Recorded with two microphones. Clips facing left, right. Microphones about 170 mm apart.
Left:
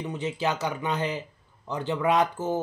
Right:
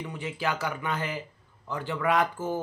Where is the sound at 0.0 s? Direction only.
20° left (ahead or behind).